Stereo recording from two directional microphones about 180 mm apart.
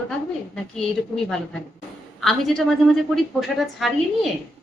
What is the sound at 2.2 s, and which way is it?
A woman's voice, centre (ahead or behind).